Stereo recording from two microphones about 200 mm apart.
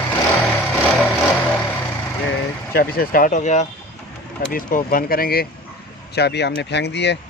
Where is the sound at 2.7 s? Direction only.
50° left (ahead or behind).